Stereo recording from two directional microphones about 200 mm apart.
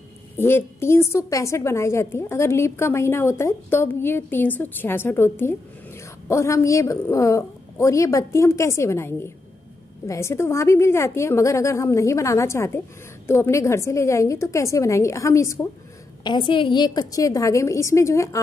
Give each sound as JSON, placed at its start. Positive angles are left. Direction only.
{"t": 0.4, "sound": "a woman's voice", "side_deg": 10}